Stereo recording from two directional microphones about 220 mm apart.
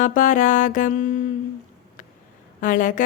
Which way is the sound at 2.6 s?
35° left (ahead or behind).